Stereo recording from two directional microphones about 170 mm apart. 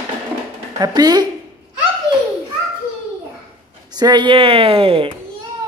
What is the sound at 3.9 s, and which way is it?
A woman's voice, 25° right (ahead or behind).